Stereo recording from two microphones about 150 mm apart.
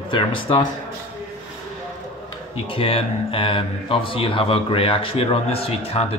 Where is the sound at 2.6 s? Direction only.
35° left (ahead or behind).